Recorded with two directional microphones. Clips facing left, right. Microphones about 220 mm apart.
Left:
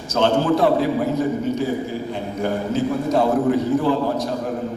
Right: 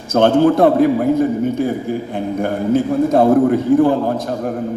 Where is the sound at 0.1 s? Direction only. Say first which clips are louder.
Right 6 dB; 55° right (ahead or behind).